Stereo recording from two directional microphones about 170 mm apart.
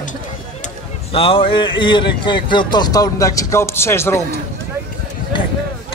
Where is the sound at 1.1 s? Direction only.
30° left (ahead or behind); by 4.2 s 15° left (ahead or behind).